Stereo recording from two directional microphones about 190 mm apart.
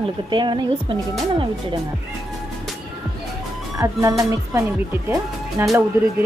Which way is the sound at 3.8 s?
15° right (ahead or behind).